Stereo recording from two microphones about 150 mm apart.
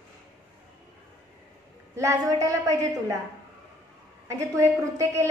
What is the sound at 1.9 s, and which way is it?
A woman's voice, 20° right (ahead or behind).